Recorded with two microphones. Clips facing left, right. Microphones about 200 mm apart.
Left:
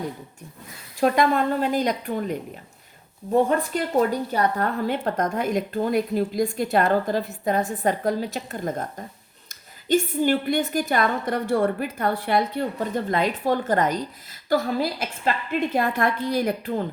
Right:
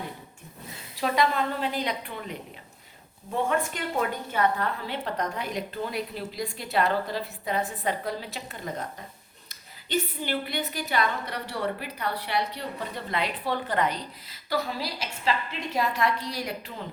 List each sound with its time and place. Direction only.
0.9 s a woman's voice: 50° left (ahead or behind)
3.3 s a woman's voice: 40° left (ahead or behind)